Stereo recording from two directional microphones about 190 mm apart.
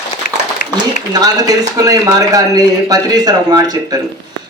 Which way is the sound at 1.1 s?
20° right (ahead or behind).